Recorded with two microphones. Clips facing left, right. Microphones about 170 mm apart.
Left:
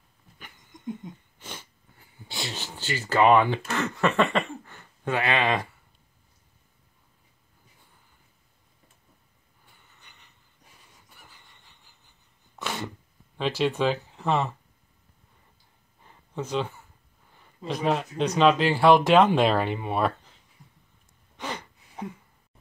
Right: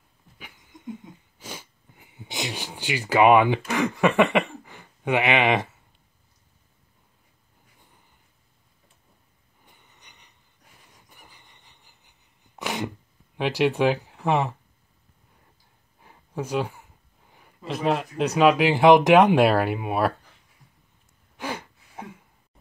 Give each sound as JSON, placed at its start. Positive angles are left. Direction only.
{"t": 0.4, "sound": "wheeze", "side_deg": -5}
{"t": 4.0, "sound": "speech", "side_deg": -15}
{"t": 9.7, "sound": "a sound", "side_deg": -15}
{"t": 11.1, "sound": "sneeze", "side_deg": -15}
{"t": 13.4, "sound": "speech", "side_deg": -15}
{"t": 16.0, "sound": "a sound", "side_deg": -10}
{"t": 17.6, "sound": "speech", "side_deg": 0}
{"t": 21.4, "sound": "gasp", "side_deg": -10}